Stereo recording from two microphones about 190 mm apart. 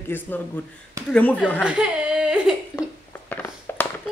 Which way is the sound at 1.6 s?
5° right (ahead or behind).